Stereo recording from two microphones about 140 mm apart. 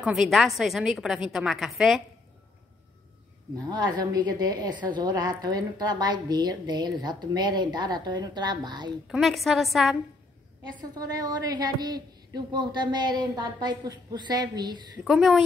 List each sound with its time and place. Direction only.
0.0 s a woman's voice: 5° right (ahead or behind)
3.7 s a woman's voice: 30° right (ahead or behind)
9.0 s a woman's voice: centre (ahead or behind)
10.8 s a woman's voice: 25° right (ahead or behind)
15.0 s a woman's voice: 5° right (ahead or behind)